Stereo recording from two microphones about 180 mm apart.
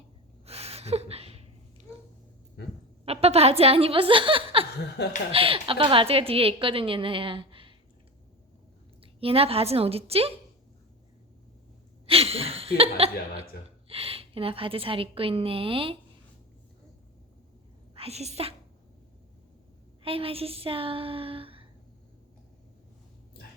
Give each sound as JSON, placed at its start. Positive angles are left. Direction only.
{"t": 0.4, "sound": "a sound", "side_deg": -35}
{"t": 3.0, "sound": "a woman's voice", "side_deg": -35}
{"t": 5.0, "sound": "speech", "side_deg": 65}
{"t": 5.3, "sound": "a woman's voice", "side_deg": -30}
{"t": 9.2, "sound": "a woman's voice", "side_deg": -35}
{"t": 12.0, "sound": "a woman's voice", "side_deg": -30}
{"t": 17.9, "sound": "speech", "side_deg": -35}
{"t": 20.0, "sound": "a woman's voice", "side_deg": -30}